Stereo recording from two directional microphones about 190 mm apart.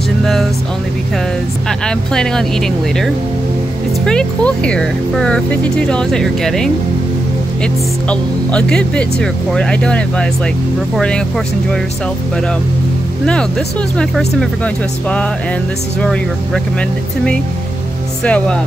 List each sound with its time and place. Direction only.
0.2 s speech: centre (ahead or behind)
1.7 s speech: 5° left (ahead or behind)
13.2 s speech: 5° left (ahead or behind)
18.2 s speech: 5° left (ahead or behind)